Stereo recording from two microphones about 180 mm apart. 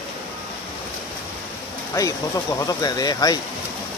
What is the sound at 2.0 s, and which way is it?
Speech, 15° left (ahead or behind).